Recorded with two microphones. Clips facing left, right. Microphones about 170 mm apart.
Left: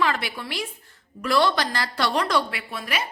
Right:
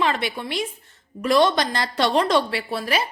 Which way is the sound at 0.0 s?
20° right (ahead or behind).